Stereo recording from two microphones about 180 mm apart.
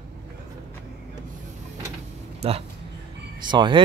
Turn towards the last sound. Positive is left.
turn(degrees=-25)  # may be behind; listen again after turning